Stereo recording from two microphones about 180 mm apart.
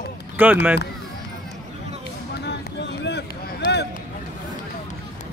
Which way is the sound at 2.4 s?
70° left (ahead or behind).